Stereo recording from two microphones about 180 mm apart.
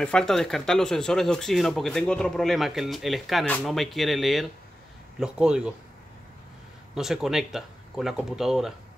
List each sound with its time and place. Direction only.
0.0 s speech: 5° left (ahead or behind)
7.0 s speech: centre (ahead or behind)